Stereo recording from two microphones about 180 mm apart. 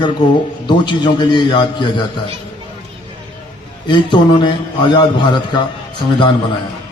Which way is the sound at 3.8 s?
25° left (ahead or behind).